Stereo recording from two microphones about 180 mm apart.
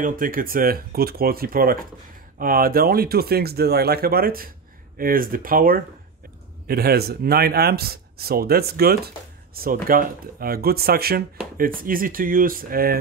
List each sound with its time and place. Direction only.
0.0 s speech: 50° right (ahead or behind)